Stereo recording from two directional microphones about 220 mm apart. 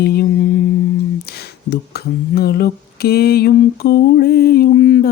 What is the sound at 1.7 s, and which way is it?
Mantra, 45° left (ahead or behind).